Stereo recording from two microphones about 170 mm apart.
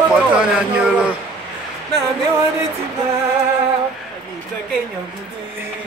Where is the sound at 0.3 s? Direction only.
5° right (ahead or behind).